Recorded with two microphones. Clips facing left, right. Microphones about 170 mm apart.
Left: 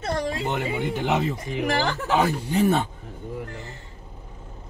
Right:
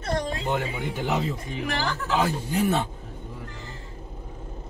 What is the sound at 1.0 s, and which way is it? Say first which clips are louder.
Speech: even; 80° left.